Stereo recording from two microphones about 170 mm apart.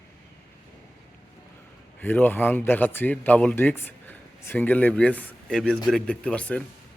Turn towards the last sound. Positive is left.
turn(degrees=5)  # may be behind; listen again after turning